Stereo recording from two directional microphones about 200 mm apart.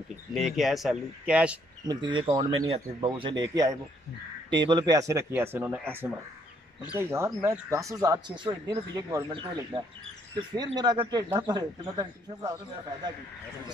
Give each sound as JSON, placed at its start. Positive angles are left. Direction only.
{"t": 0.3, "sound": "speech", "side_deg": 0}
{"t": 1.9, "sound": "speech", "side_deg": -25}